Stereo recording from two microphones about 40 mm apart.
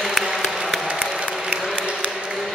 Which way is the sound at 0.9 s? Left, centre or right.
Right.